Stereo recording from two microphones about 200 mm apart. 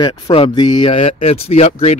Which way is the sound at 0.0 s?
25° left (ahead or behind).